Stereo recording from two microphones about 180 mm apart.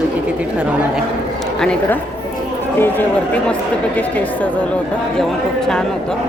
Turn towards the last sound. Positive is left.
turn(degrees=5)  # may be behind; listen again after turning